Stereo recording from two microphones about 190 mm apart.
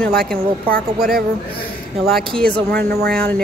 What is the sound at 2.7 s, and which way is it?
Speech, 60° right (ahead or behind).